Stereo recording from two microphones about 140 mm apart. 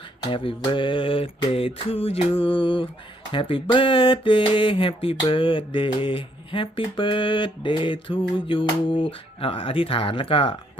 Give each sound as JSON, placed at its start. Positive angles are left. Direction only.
{"t": 0.3, "sound": "speech", "side_deg": 40}